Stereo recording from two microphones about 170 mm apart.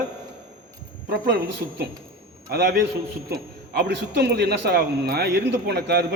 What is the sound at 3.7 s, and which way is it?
A man's voice, 80° right.